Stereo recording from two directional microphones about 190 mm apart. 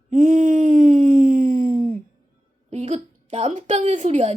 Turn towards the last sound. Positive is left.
turn(degrees=-35)  # may be behind; listen again after turning